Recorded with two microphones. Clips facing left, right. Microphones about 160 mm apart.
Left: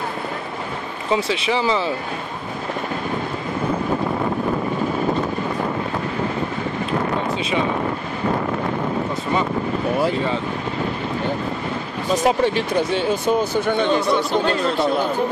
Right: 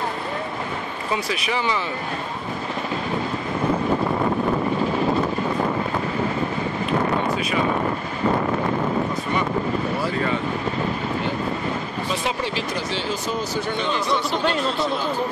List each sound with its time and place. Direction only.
1.1 s speech: 25° left (ahead or behind)
12.1 s speech: 45° left (ahead or behind)